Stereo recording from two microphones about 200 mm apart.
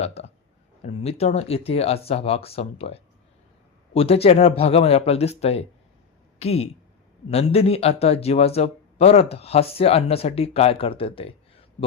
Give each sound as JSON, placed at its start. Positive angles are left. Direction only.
{"t": 0.0, "sound": "speech", "side_deg": 30}